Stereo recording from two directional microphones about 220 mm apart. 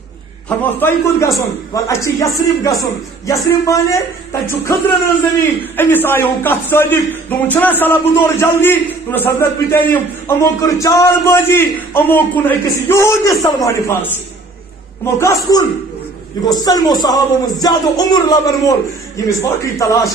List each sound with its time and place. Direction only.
0.7 s a man's voice: 10° left (ahead or behind)
5.8 s a man's voice: 10° left (ahead or behind)
15.1 s a man's voice: 15° left (ahead or behind)